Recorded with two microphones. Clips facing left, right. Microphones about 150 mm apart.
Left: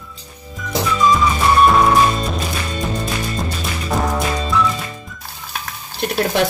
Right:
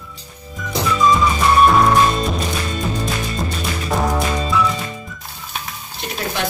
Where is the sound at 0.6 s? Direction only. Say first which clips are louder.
Even; centre (ahead or behind).